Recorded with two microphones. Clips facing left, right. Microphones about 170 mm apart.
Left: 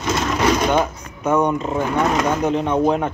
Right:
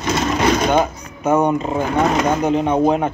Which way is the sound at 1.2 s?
5° right (ahead or behind).